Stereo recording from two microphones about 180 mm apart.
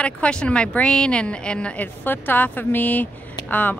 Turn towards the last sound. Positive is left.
turn(degrees=10)  # may be behind; listen again after turning